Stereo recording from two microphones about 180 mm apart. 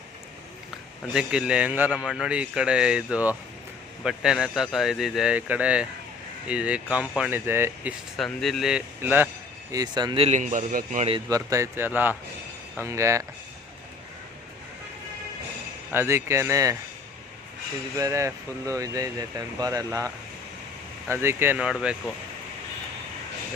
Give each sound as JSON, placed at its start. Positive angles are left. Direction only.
{"t": 1.1, "sound": "a man's voice", "side_deg": -5}
{"t": 8.2, "sound": "a man's voice", "side_deg": 0}
{"t": 9.7, "sound": "speech", "side_deg": -20}
{"t": 10.2, "sound": "a man's voice", "side_deg": -45}
{"t": 11.3, "sound": "speech", "side_deg": -20}
{"t": 15.9, "sound": "speech", "side_deg": -15}
{"t": 17.9, "sound": "speech", "side_deg": -15}
{"t": 21.1, "sound": "a man's voice", "side_deg": -15}